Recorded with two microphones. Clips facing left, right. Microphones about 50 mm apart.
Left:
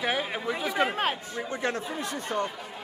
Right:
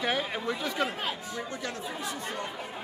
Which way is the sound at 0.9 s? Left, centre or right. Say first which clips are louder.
Left 5 dB; left.